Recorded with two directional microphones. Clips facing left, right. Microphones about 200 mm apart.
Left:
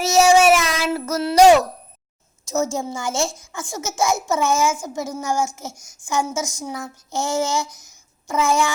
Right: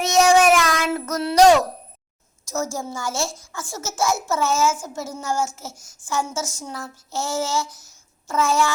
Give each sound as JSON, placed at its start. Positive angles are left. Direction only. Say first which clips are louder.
{"t": 0.0, "sound": "child singing", "louder": "left 2 dB", "side_deg": 5}
{"t": 2.5, "sound": "a woman's voice", "louder": "left 4 dB", "side_deg": 20}
{"t": 7.8, "sound": "a sound", "louder": "even", "side_deg": 15}